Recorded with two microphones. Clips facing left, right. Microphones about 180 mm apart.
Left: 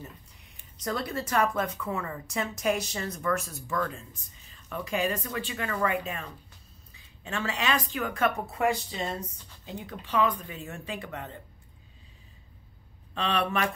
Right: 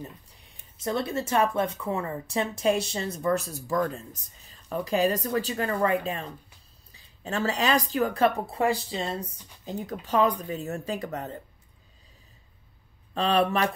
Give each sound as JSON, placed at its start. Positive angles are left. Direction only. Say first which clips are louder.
{"t": 0.8, "sound": "speech", "louder": "right 4 dB", "side_deg": -25}
{"t": 13.1, "sound": "speech", "louder": "right 5 dB", "side_deg": -40}